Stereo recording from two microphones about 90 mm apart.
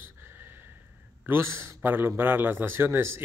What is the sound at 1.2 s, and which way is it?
A man's voice, 30° right (ahead or behind).